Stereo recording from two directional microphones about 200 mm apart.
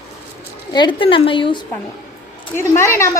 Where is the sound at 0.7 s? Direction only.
25° left (ahead or behind).